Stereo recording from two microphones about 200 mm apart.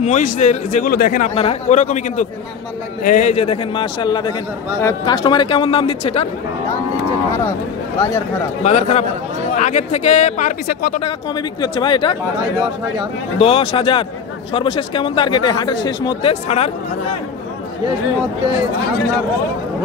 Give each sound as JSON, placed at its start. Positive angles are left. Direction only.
{"t": 0.0, "sound": "speech", "side_deg": 35}
{"t": 1.3, "sound": "speech", "side_deg": 30}
{"t": 8.6, "sound": "speech", "side_deg": 35}
{"t": 11.6, "sound": "speech", "side_deg": 20}
{"t": 13.4, "sound": "speech", "side_deg": 30}